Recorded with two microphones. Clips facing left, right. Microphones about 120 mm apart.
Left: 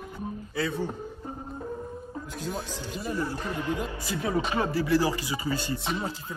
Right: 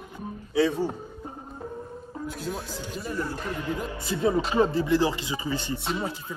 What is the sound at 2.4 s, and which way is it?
Speech, centre (ahead or behind).